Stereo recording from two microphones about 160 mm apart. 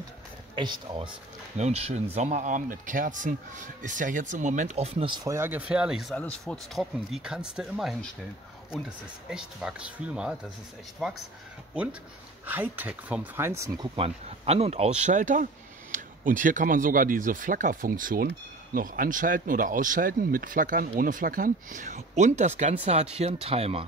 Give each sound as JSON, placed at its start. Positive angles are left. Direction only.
{"t": 0.6, "sound": "speech", "side_deg": -30}
{"t": 1.6, "sound": "speech", "side_deg": -40}
{"t": 5.3, "sound": "speech", "side_deg": -15}
{"t": 5.6, "sound": "speech", "side_deg": -5}
{"t": 12.4, "sound": "speech", "side_deg": -10}
{"t": 13.9, "sound": "speech", "side_deg": -40}